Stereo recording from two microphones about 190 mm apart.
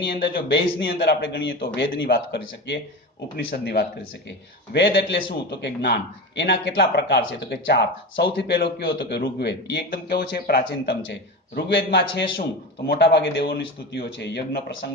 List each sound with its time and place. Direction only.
0.0 s speech: 65° left (ahead or behind)